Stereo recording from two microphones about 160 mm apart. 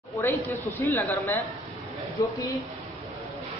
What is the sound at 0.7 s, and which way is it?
A woman's voice, 10° left (ahead or behind).